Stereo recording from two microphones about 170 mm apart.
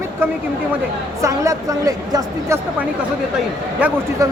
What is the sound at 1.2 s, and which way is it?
Speech, 20° right (ahead or behind).